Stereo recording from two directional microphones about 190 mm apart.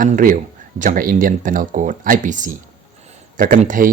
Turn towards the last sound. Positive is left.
turn(degrees=-45)  # may be behind; listen again after turning